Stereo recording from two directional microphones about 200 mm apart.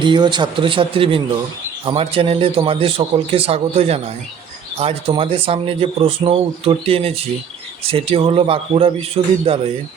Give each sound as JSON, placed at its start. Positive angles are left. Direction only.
{"t": 0.0, "sound": "speech", "side_deg": -25}